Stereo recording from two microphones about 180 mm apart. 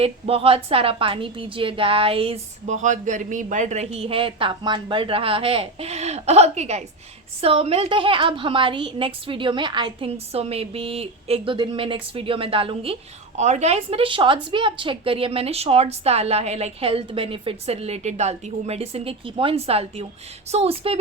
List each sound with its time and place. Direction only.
0.0 s a woman's voice: 30° right (ahead or behind)